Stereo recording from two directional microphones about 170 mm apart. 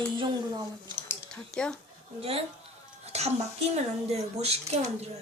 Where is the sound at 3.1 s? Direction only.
40° right (ahead or behind).